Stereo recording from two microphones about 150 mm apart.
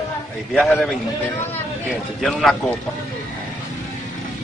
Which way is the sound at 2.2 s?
Centre (ahead or behind).